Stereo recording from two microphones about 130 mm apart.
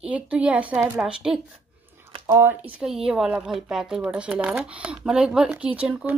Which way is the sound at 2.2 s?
15° right (ahead or behind).